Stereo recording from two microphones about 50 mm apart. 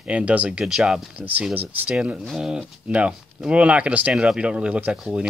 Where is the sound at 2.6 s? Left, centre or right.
Right.